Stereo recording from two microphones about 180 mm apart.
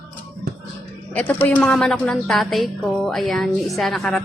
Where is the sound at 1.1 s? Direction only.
10° left (ahead or behind).